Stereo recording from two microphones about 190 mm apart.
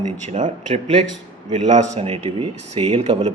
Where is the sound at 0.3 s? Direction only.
40° right (ahead or behind).